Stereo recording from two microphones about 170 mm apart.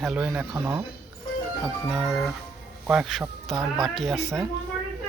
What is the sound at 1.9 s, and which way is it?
Speech, 5° right (ahead or behind).